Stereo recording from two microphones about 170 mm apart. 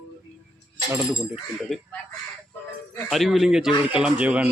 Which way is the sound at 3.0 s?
Centre (ahead or behind).